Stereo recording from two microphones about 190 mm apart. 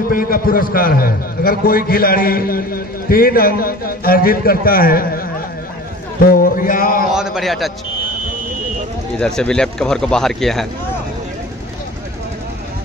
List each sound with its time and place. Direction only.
0.1 s a man's voice: 50° left (ahead or behind)
6.4 s a man's voice: 50° left (ahead or behind)
7.1 s speech: 5° right (ahead or behind)
9.2 s speech: 5° left (ahead or behind)